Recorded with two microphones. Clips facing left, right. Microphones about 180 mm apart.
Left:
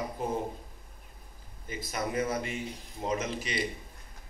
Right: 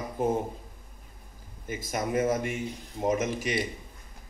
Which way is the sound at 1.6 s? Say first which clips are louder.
Right 3 dB; 50° right (ahead or behind).